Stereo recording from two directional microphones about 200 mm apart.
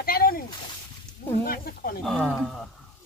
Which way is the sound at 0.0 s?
45° left (ahead or behind).